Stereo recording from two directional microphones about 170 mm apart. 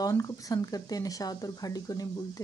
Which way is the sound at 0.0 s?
20° left (ahead or behind).